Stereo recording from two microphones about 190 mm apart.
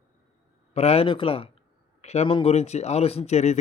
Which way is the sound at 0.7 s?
35° left (ahead or behind).